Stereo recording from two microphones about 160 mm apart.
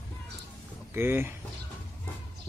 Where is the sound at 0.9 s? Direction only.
15° right (ahead or behind).